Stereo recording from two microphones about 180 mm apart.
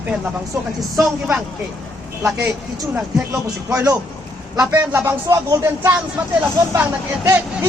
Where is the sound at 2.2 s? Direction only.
10° right (ahead or behind).